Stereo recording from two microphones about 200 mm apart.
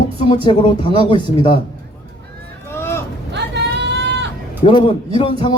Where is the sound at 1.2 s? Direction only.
25° right (ahead or behind).